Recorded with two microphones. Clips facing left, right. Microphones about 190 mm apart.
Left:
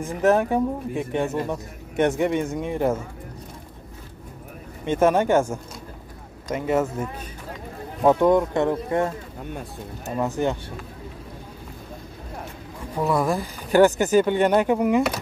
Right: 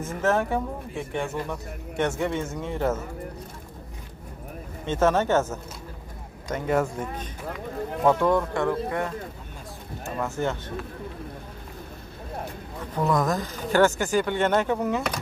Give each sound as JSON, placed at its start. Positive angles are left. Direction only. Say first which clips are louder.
{"t": 0.0, "sound": "speech", "louder": "left 5 dB", "side_deg": 15}
{"t": 4.8, "sound": "speech", "louder": "left 3 dB", "side_deg": 15}
{"t": 8.0, "sound": "speech", "louder": "left 4 dB", "side_deg": 15}
{"t": 12.9, "sound": "speech", "louder": "left 2 dB", "side_deg": 10}